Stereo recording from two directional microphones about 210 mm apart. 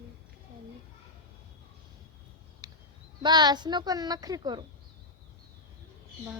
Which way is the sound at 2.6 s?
20° right (ahead or behind).